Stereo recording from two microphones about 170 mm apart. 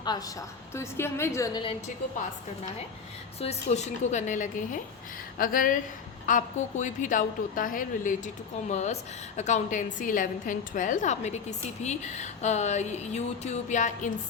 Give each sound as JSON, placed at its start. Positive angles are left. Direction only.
{"t": 0.7, "sound": "a woman's voice", "side_deg": 15}
{"t": 3.4, "sound": "a woman's voice", "side_deg": 40}